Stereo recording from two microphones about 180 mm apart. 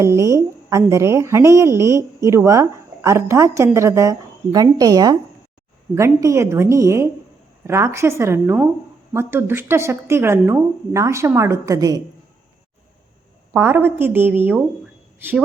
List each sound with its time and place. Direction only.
0.0 s a woman's voice: 15° right (ahead or behind)
13.5 s a woman's voice: 15° right (ahead or behind)